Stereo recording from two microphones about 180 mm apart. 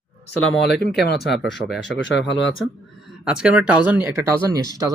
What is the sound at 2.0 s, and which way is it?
Speech, 75° left (ahead or behind).